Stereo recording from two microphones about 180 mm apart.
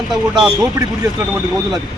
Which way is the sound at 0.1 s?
5° right (ahead or behind).